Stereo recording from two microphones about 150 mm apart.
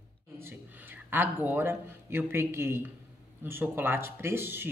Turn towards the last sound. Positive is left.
turn(degrees=-15)  # may be behind; listen again after turning